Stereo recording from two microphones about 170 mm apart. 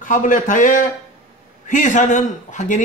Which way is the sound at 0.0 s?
50° left (ahead or behind).